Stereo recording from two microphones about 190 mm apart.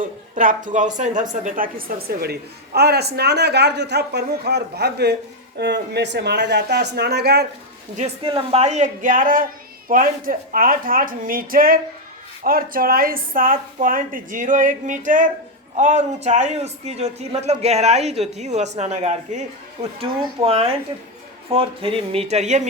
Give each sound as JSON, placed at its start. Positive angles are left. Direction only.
{"t": 0.0, "sound": "a sound", "side_deg": -45}
{"t": 0.9, "sound": "a woman's voice", "side_deg": -40}
{"t": 7.9, "sound": "speech", "side_deg": -30}